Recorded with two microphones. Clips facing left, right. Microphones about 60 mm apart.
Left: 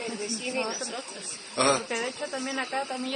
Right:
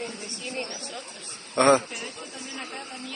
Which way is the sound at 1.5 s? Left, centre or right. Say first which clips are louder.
Right 5 dB; right.